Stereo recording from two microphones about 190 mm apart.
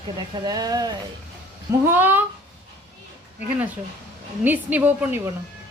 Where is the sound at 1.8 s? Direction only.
10° right (ahead or behind).